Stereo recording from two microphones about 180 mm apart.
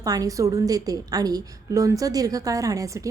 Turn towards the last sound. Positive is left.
turn(degrees=-20)  # may be behind; listen again after turning